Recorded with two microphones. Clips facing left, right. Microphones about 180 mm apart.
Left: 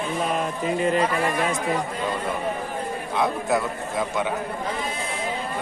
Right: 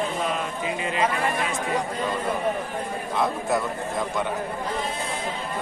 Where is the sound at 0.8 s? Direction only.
45° left (ahead or behind).